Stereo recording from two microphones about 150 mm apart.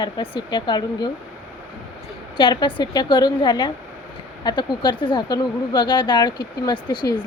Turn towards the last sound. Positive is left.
turn(degrees=30)  # may be behind; listen again after turning